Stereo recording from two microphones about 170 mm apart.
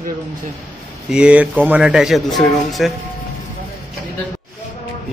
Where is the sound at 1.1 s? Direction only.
5° right (ahead or behind).